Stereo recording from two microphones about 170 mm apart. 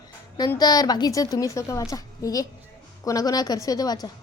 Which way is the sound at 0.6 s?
25° left (ahead or behind).